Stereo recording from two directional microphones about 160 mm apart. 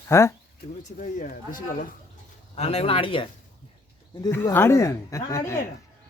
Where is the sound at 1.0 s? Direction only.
55° left (ahead or behind).